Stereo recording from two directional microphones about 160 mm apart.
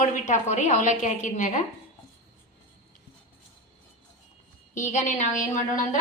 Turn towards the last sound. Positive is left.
turn(degrees=55)  # may be behind; listen again after turning